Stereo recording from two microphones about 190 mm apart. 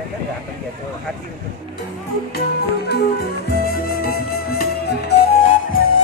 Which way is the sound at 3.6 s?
55° left (ahead or behind).